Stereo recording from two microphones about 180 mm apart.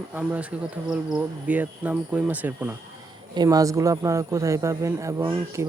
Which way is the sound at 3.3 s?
20° right (ahead or behind).